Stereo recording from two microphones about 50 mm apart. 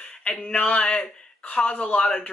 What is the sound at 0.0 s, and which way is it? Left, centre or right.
Speech, left.